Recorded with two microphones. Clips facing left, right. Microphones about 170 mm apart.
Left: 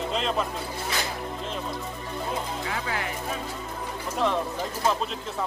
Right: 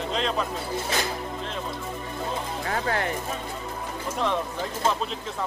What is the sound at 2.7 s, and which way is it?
Speech, 45° right (ahead or behind).